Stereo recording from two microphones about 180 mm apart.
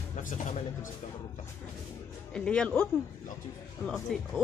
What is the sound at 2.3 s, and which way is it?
A man's voice, 5° left (ahead or behind).